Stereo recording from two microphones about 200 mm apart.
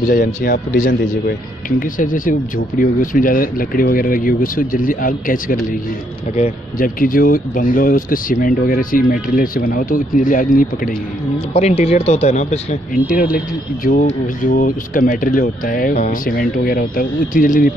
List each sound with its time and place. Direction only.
0.1 s speech: 45° left (ahead or behind)
11.3 s speech: 30° left (ahead or behind)